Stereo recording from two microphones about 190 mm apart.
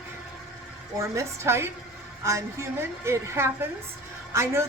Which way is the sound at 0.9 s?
15° right (ahead or behind).